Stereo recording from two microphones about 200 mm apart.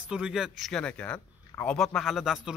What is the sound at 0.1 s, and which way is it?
A man's voice, 5° right (ahead or behind).